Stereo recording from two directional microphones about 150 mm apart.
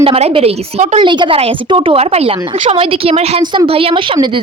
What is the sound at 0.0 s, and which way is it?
Speech, 45° right (ahead or behind).